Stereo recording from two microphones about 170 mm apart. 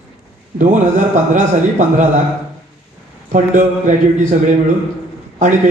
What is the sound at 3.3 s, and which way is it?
A man's voice, 50° right (ahead or behind).